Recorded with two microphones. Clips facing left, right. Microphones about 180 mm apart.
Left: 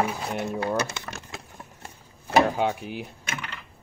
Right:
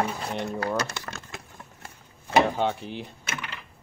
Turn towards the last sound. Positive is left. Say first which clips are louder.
# left 1 dB
turn(degrees=10)  # may be behind; listen again after turning